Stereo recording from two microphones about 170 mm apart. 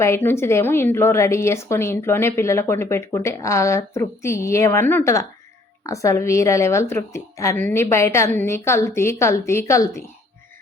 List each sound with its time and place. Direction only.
0.0 s a woman's voice: 15° left (ahead or behind)